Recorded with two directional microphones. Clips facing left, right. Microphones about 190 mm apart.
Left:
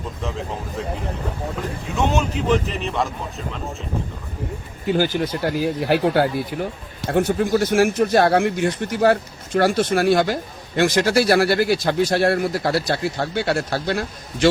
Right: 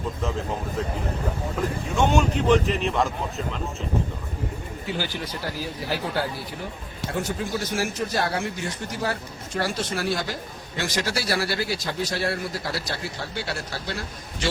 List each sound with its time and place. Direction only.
2.0 s a man's voice: centre (ahead or behind)
4.9 s speech: 45° left (ahead or behind); by 14.0 s 65° left (ahead or behind)